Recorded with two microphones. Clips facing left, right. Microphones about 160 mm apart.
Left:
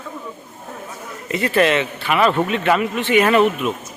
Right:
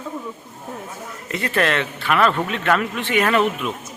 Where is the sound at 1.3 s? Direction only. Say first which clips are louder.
Left 4 dB; 5° left (ahead or behind).